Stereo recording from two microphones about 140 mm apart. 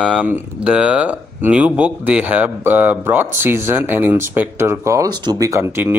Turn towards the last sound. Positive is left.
turn(degrees=-20)  # may be behind; listen again after turning